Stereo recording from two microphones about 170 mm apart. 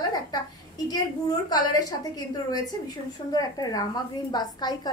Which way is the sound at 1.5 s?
25° left (ahead or behind).